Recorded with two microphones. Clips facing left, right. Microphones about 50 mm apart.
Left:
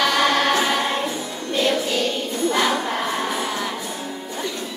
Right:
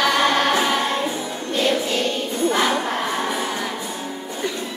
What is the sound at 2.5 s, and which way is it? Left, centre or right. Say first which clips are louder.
Battle cry: even; centre.